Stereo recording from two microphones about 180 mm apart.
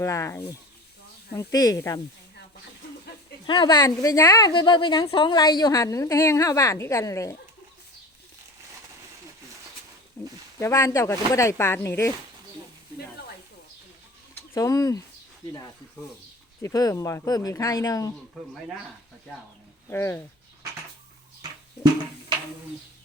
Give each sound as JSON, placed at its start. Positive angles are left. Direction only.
{"t": 0.0, "sound": "a woman's voice", "side_deg": 15}
{"t": 3.4, "sound": "a woman's voice", "side_deg": 25}
{"t": 10.2, "sound": "speech", "side_deg": 15}
{"t": 14.5, "sound": "a woman's voice", "side_deg": 20}
{"t": 16.6, "sound": "speech", "side_deg": 20}
{"t": 19.9, "sound": "speech", "side_deg": 15}